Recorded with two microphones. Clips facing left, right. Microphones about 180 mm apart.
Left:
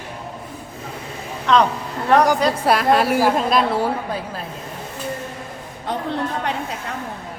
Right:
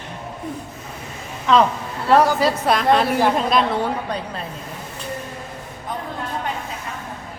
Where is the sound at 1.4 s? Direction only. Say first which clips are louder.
Right 1 dB; centre (ahead or behind).